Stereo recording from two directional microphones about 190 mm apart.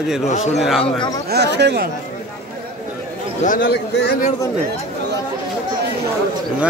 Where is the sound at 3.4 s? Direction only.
45° left (ahead or behind).